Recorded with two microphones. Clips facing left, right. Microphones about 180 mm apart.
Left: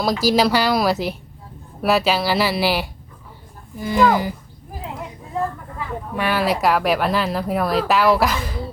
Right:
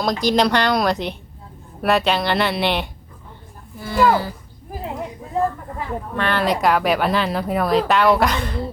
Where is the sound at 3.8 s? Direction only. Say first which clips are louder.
Left 1 dB; 15° left (ahead or behind).